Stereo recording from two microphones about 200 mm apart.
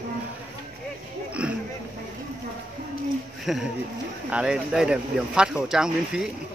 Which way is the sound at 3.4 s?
Centre (ahead or behind).